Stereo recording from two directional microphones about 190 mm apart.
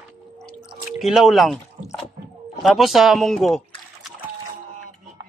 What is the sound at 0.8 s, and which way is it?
Speech, centre (ahead or behind).